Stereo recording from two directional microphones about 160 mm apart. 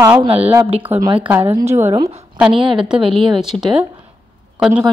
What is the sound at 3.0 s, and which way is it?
Speech, 30° right (ahead or behind).